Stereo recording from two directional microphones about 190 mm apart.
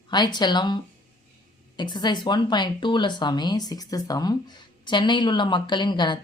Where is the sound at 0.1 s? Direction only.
20° left (ahead or behind).